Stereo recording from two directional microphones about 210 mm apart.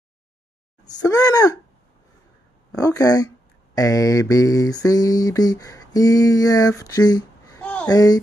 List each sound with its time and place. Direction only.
0.8 s mantra: 15° left (ahead or behind)
2.7 s mantra: 15° left (ahead or behind)
7.9 s mantra: 20° left (ahead or behind)